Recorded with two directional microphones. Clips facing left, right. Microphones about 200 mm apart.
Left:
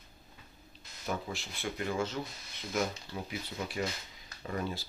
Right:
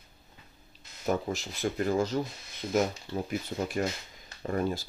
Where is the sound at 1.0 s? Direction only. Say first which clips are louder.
Right 7 dB; 40° right (ahead or behind).